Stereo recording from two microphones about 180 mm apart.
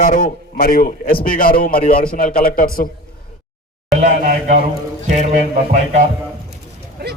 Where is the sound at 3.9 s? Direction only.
45° right (ahead or behind).